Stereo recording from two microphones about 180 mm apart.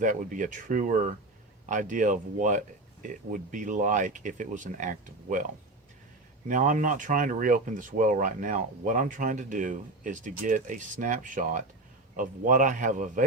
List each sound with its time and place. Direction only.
0.0 s speech: 45° right (ahead or behind)
6.5 s speech: 45° right (ahead or behind)